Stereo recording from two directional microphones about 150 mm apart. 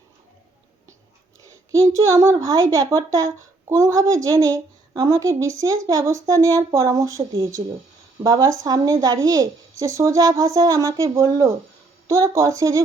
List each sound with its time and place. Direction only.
1.4 s a child's voice: 20° right (ahead or behind)